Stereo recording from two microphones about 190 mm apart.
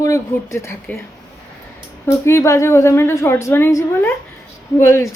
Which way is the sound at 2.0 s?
15° left (ahead or behind).